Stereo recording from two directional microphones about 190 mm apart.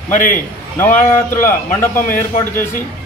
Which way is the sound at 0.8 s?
15° left (ahead or behind).